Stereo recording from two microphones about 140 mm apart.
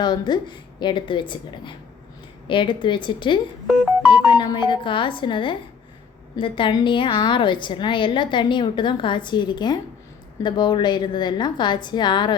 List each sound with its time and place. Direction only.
0.0 s a woman's voice: 30° left (ahead or behind)